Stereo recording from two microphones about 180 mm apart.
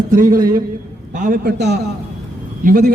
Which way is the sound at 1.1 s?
45° right (ahead or behind).